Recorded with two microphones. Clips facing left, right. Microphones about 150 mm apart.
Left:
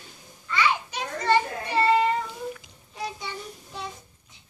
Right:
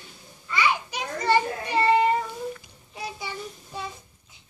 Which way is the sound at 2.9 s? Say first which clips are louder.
Even; 10° right (ahead or behind).